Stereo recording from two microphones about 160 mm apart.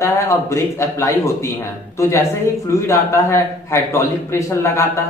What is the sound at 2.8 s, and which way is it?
A man's voice, 15° left (ahead or behind).